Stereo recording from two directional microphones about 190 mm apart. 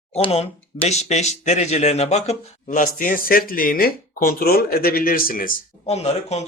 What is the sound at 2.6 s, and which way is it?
Speech, 45° left (ahead or behind).